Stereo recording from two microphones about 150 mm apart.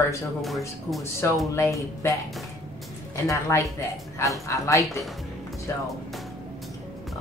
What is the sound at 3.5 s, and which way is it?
Speech, 20° left (ahead or behind).